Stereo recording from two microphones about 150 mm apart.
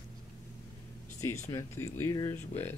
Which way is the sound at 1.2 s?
20° left (ahead or behind).